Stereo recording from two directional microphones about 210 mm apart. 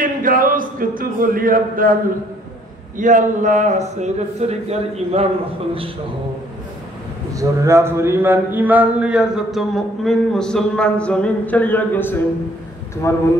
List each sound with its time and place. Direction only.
0.0 s speech: 40° right (ahead or behind)
3.0 s speech: 35° right (ahead or behind)
7.3 s speech: 15° right (ahead or behind); by 13.2 s 15° left (ahead or behind)